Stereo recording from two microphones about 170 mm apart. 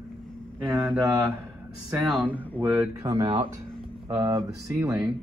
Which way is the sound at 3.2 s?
35° right (ahead or behind).